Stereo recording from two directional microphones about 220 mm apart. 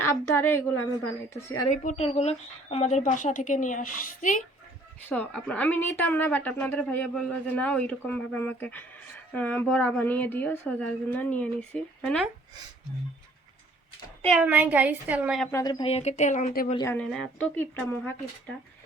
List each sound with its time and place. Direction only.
0.0 s a woman's voice: 10° left (ahead or behind)
1.7 s speech: 35° left (ahead or behind)
5.0 s speech: 5° left (ahead or behind)
14.2 s a woman's voice: centre (ahead or behind)
15.5 s speech: 20° left (ahead or behind); by 16.7 s 40° left (ahead or behind)
16.7 s speech: 10° left (ahead or behind)